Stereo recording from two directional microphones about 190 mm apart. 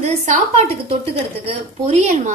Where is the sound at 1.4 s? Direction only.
35° right (ahead or behind).